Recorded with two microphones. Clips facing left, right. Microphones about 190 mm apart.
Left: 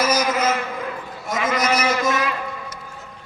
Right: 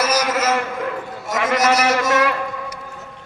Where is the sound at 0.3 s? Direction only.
85° right.